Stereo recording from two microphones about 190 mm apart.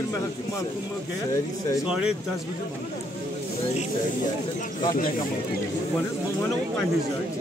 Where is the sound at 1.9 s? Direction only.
5° right (ahead or behind).